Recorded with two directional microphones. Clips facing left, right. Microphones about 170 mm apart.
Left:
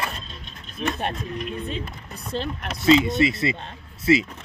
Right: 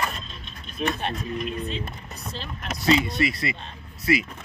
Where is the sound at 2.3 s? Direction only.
60° left (ahead or behind).